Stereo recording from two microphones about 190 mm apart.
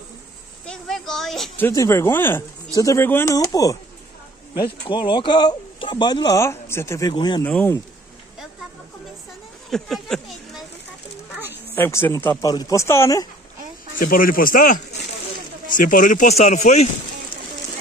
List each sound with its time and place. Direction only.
0.7 s speech: centre (ahead or behind)
1.7 s speech: 15° left (ahead or behind)
4.8 s speech: 25° left (ahead or behind)
7.4 s speech: 10° left (ahead or behind)
9.7 s a sound: centre (ahead or behind)
11.7 s speech: 10° left (ahead or behind)
13.9 s speech: 50° left (ahead or behind)